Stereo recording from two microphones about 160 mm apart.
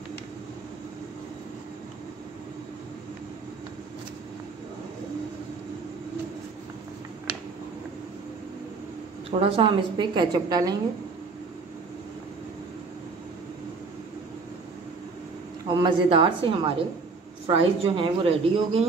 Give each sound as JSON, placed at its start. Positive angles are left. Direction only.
{"t": 9.3, "sound": "a woman's voice", "side_deg": -35}
{"t": 15.7, "sound": "a woman's voice", "side_deg": -30}